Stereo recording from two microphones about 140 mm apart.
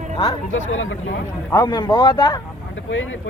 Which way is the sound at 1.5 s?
30° left (ahead or behind).